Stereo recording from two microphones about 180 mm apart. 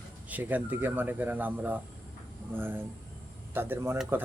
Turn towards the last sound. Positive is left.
turn(degrees=-15)  # may be behind; listen again after turning